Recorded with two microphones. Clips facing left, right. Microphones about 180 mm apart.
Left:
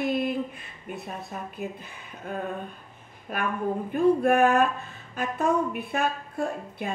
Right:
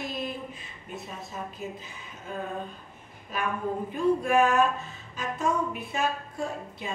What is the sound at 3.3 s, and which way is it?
Speech, 55° left (ahead or behind).